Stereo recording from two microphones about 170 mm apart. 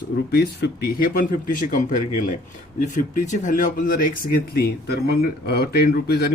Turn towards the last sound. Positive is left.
turn(degrees=70)  # may be behind; listen again after turning